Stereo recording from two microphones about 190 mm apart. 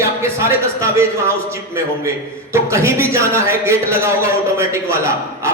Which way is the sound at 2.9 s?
15° right (ahead or behind).